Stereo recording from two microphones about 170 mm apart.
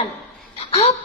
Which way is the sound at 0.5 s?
35° left (ahead or behind).